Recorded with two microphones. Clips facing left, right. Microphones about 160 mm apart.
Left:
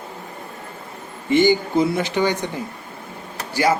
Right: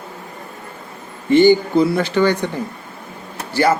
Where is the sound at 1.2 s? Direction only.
15° left (ahead or behind).